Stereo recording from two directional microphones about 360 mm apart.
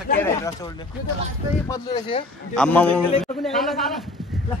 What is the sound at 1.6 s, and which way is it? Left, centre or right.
A man's voice, centre.